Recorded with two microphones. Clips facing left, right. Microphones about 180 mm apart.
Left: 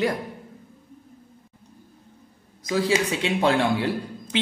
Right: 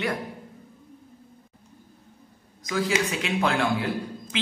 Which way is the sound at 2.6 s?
30° left (ahead or behind).